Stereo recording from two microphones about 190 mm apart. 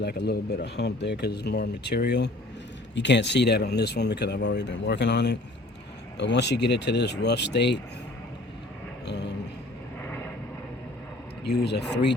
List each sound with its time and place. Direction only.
0.0 s speech: 60° left (ahead or behind)
9.0 s a sound: 65° left (ahead or behind)
10.0 s vehicle: 10° left (ahead or behind)
11.4 s speech: 60° left (ahead or behind)